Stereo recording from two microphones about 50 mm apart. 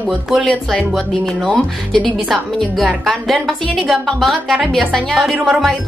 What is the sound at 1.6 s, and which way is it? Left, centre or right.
Speech, left.